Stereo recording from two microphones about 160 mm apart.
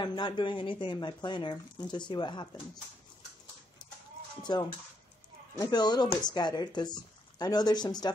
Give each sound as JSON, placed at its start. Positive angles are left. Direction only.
{"t": 0.0, "sound": "speech", "side_deg": 30}
{"t": 4.4, "sound": "speech", "side_deg": 25}